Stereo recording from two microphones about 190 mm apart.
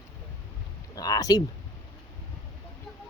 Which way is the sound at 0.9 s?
20° left (ahead or behind).